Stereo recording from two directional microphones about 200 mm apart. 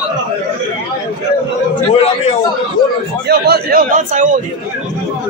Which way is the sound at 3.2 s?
55° right (ahead or behind).